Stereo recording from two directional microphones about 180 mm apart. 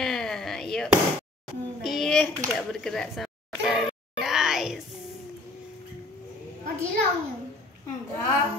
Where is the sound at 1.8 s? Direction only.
Centre (ahead or behind).